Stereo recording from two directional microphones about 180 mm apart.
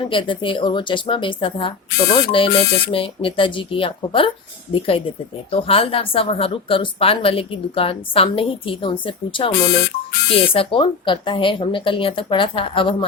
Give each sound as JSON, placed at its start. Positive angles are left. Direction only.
{"t": 0.0, "sound": "speech", "side_deg": 30}